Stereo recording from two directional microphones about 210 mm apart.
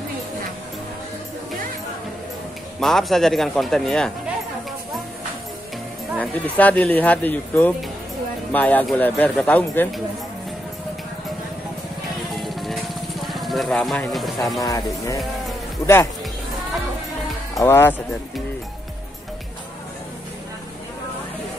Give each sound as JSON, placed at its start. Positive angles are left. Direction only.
{"t": 2.8, "sound": "speech", "side_deg": 0}
{"t": 6.1, "sound": "speech", "side_deg": 5}
{"t": 12.4, "sound": "music", "side_deg": 0}
{"t": 14.6, "sound": "speech", "side_deg": 15}
{"t": 17.6, "sound": "speech", "side_deg": 10}